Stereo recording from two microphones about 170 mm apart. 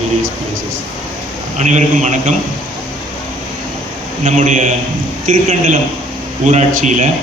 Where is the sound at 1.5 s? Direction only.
45° right (ahead or behind).